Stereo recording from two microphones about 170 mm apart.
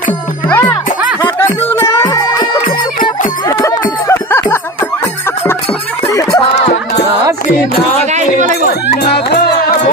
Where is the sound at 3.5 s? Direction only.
15° left (ahead or behind).